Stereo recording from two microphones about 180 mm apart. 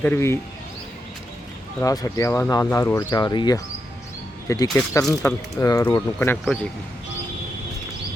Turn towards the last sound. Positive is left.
turn(degrees=0)  # may be behind; listen again after turning